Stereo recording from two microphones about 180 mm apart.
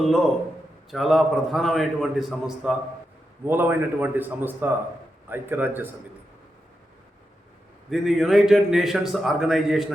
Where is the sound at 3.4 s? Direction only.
10° right (ahead or behind).